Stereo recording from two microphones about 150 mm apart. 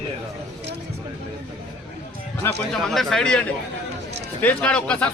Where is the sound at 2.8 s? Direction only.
5° left (ahead or behind).